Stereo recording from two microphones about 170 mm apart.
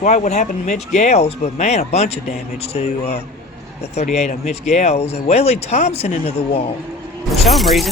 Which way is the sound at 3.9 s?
40° left (ahead or behind).